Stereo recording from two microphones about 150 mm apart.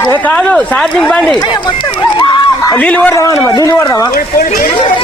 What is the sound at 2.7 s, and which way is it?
Speech, 10° left (ahead or behind).